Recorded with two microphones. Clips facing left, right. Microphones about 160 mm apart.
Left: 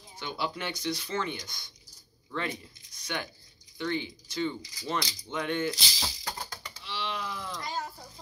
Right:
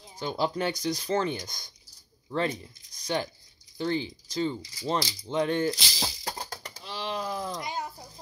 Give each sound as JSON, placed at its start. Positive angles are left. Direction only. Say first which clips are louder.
{"t": 0.2, "sound": "speech", "louder": "right 6 dB", "side_deg": -35}
{"t": 3.7, "sound": "a sound", "louder": "right 3 dB", "side_deg": -35}
{"t": 7.5, "sound": "cat", "louder": "right 2 dB", "side_deg": -20}